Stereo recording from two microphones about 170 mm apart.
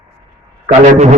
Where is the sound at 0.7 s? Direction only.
40° right (ahead or behind).